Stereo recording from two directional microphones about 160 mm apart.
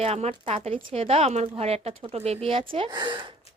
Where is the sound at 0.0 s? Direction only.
40° right (ahead or behind).